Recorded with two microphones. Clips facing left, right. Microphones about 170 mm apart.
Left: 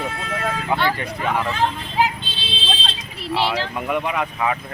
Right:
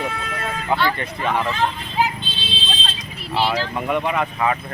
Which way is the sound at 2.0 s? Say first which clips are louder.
Left 1 dB; 85° left.